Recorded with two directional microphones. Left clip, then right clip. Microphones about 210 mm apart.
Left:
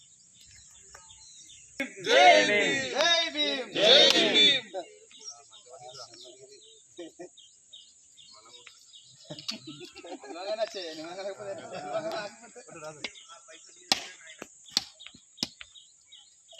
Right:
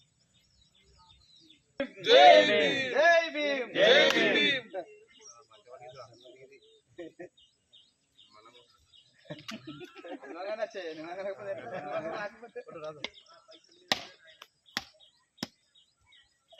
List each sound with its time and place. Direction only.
2.0 s speech: 30° right (ahead or behind)
2.8 s speech: 10° right (ahead or behind)
4.1 s a sound: 10° right (ahead or behind)
5.2 s bird: centre (ahead or behind)
9.3 s a sound: centre (ahead or behind)
10.1 s speech: 15° right (ahead or behind)
11.6 s speech: centre (ahead or behind)
12.8 s speech: 20° right (ahead or behind)